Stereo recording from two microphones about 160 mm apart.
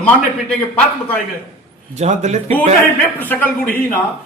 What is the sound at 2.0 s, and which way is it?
Speech, 45° right (ahead or behind).